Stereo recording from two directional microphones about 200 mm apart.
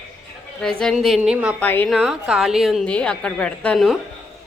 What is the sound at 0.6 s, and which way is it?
Speech, centre (ahead or behind).